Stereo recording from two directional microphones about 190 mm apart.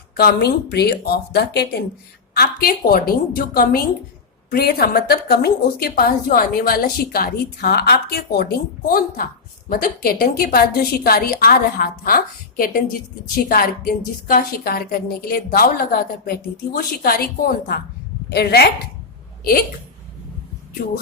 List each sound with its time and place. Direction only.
0.2 s a woman's voice: 55° left (ahead or behind)